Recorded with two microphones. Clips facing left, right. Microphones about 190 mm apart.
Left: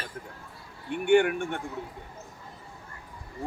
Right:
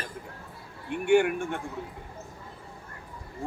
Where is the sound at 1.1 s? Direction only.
Centre (ahead or behind).